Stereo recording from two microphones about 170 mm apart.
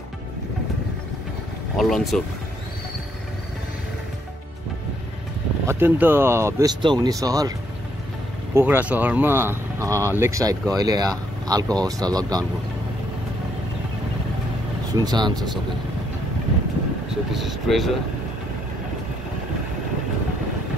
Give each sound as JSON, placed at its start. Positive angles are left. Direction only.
{"t": 1.8, "sound": "speech", "side_deg": 0}
{"t": 5.7, "sound": "speech", "side_deg": -10}
{"t": 6.8, "sound": "speech", "side_deg": -25}
{"t": 8.5, "sound": "speech", "side_deg": -10}
{"t": 15.0, "sound": "speech", "side_deg": -25}
{"t": 17.1, "sound": "speech", "side_deg": 0}